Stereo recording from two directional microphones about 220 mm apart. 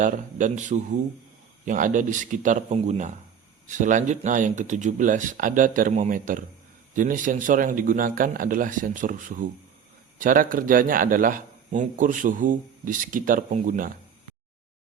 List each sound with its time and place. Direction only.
0.0 s a man's voice: 35° right (ahead or behind)